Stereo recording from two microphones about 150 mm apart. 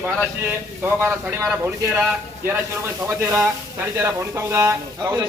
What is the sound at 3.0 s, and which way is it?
Speech, 15° right (ahead or behind).